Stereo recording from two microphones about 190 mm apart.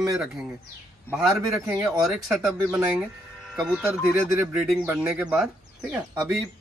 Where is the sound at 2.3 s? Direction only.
5° right (ahead or behind).